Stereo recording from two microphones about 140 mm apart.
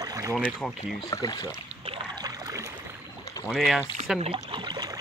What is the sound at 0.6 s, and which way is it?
Speech, centre (ahead or behind).